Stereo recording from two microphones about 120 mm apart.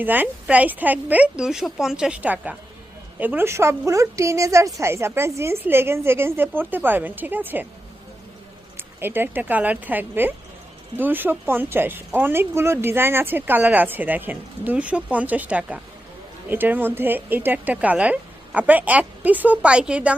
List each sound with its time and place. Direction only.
0.0 s a woman's voice: 15° right (ahead or behind)
9.0 s speech: 15° right (ahead or behind)